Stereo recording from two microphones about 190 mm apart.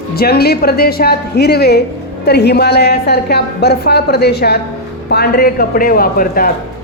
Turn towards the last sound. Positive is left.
turn(degrees=50)  # may be behind; listen again after turning